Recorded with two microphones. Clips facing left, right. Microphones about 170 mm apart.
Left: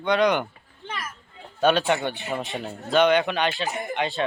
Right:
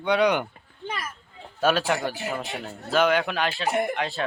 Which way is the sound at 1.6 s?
5° right (ahead or behind).